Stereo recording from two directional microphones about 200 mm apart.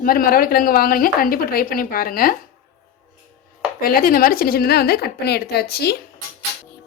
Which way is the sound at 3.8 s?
45° left (ahead or behind).